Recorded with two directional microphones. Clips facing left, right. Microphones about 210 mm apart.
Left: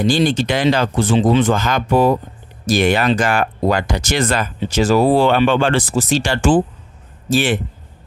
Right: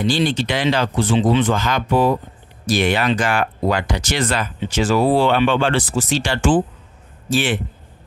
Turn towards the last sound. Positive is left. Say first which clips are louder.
# left 3 dB
turn(degrees=40)  # may be behind; listen again after turning